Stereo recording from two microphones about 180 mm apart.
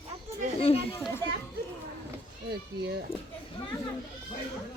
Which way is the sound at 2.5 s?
70° right (ahead or behind).